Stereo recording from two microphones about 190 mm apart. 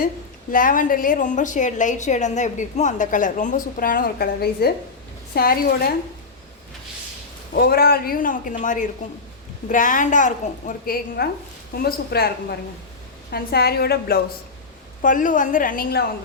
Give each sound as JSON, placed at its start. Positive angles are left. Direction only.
{"t": 0.5, "sound": "a woman's voice", "side_deg": 45}
{"t": 7.5, "sound": "a woman's voice", "side_deg": 55}
{"t": 15.0, "sound": "a woman's voice", "side_deg": 45}